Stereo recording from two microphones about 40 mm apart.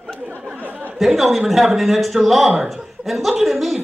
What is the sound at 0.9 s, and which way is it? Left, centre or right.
Speech, centre.